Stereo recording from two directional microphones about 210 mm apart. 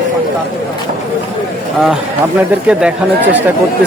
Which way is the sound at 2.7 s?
5° right (ahead or behind).